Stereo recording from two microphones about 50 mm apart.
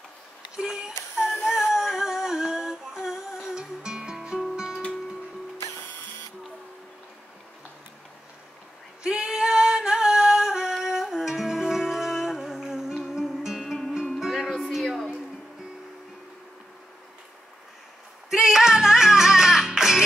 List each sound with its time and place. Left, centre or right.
0.6 s speech: centre
1.4 s humming: centre
4.6 s music: centre
5.6 s music: left
9.0 s singing: centre
14.2 s music: centre
14.8 s a sound: centre
18.3 s music: centre